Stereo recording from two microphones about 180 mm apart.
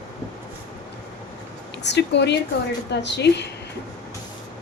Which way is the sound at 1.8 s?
70° left (ahead or behind).